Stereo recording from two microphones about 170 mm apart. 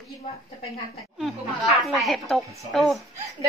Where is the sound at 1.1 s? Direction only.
Centre (ahead or behind).